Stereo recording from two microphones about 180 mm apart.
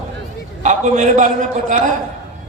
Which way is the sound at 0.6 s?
45° right (ahead or behind).